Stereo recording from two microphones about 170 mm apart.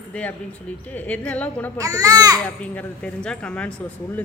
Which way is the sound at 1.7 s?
20° right (ahead or behind).